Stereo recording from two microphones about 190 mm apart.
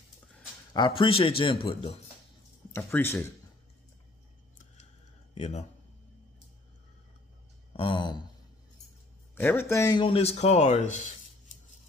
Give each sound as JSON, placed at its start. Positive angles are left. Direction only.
{"t": 0.7, "sound": "speech", "side_deg": 25}
{"t": 2.8, "sound": "speech", "side_deg": 10}
{"t": 5.4, "sound": "speech", "side_deg": 35}
{"t": 7.7, "sound": "a sound", "side_deg": 25}
{"t": 9.3, "sound": "speech", "side_deg": 10}